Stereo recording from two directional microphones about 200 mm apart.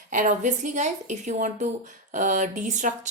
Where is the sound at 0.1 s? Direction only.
40° right (ahead or behind).